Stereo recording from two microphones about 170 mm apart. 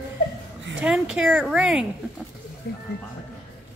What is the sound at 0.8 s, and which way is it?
Speech, 5° right (ahead or behind).